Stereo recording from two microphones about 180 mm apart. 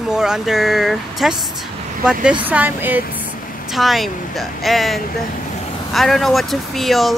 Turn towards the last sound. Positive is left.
turn(degrees=0)  # may be behind; listen again after turning